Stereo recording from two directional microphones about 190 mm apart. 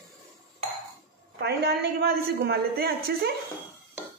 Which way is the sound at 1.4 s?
60° right (ahead or behind).